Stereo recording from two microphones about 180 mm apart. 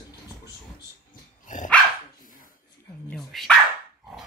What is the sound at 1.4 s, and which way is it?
Dog, 45° left (ahead or behind).